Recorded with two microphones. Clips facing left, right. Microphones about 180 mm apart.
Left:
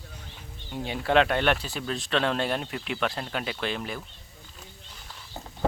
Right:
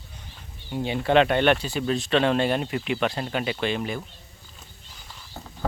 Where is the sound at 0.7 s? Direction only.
Centre (ahead or behind).